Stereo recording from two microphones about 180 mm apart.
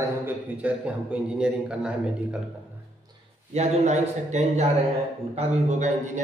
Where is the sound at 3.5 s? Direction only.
40° right (ahead or behind).